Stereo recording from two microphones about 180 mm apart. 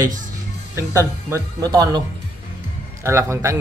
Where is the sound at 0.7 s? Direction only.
15° right (ahead or behind).